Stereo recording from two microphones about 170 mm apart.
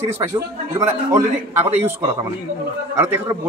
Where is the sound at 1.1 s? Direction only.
15° right (ahead or behind).